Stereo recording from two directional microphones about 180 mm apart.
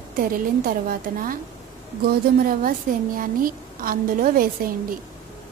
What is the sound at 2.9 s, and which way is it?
A woman's voice, 45° right (ahead or behind).